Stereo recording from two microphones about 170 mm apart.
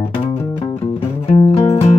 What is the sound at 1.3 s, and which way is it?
Music, 40° left (ahead or behind).